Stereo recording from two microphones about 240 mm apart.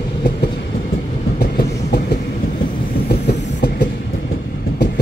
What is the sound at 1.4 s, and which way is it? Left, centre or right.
Train, left.